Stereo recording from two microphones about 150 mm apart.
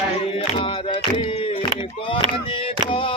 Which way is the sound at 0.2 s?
35° left (ahead or behind).